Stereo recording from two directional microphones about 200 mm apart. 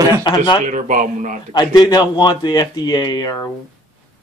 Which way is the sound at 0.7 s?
40° right (ahead or behind).